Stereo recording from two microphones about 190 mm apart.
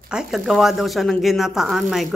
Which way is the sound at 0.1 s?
Centre (ahead or behind).